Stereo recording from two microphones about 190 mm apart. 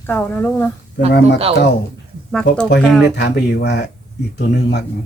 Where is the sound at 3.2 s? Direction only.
60° left (ahead or behind).